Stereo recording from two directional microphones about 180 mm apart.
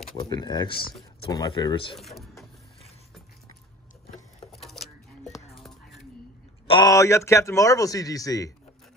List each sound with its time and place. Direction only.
0.1 s a man's voice: 25° left (ahead or behind)
2.0 s speech: centre (ahead or behind)
4.5 s a sound: centre (ahead or behind)
6.7 s a man's voice: 20° left (ahead or behind)